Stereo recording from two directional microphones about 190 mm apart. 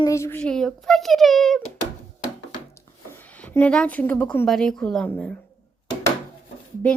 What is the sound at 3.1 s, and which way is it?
A woman's voice, 10° left (ahead or behind).